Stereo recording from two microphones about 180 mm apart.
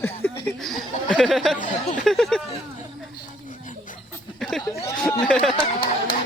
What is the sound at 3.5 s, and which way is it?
Chuckle, 45° left (ahead or behind).